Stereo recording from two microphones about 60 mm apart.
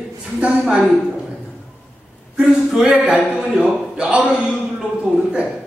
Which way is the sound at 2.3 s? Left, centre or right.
Centre.